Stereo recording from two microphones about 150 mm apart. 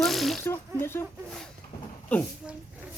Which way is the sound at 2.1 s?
10° left (ahead or behind).